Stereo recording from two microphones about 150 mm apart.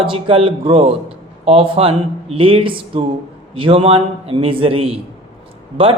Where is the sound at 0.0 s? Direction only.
35° right (ahead or behind).